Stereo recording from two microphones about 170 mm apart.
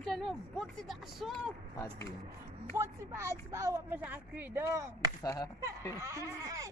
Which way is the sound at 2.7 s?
15° right (ahead or behind).